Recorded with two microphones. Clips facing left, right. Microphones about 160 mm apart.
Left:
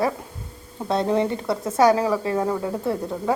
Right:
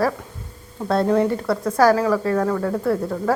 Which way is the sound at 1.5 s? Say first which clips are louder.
Even; 25° left (ahead or behind).